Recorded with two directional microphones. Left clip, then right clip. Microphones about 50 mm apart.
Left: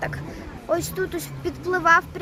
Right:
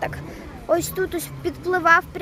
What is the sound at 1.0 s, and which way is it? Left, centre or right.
Speech, right.